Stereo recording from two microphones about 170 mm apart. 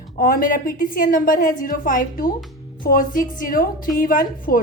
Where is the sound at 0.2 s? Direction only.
55° left (ahead or behind).